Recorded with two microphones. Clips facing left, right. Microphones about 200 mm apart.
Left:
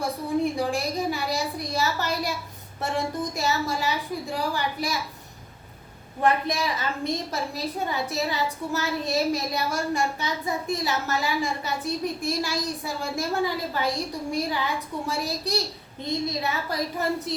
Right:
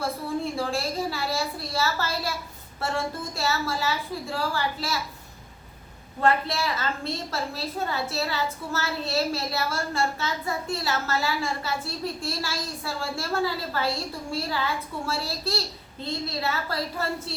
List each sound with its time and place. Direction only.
0.0 s a woman's voice: 15° left (ahead or behind)
6.1 s a woman's voice: 15° left (ahead or behind)